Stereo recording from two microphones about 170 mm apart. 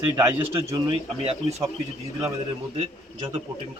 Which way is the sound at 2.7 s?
30° right (ahead or behind).